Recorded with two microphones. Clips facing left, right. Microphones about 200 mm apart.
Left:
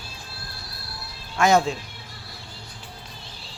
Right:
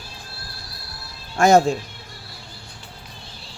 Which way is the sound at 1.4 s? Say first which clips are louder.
Right 4 dB; 45° right (ahead or behind).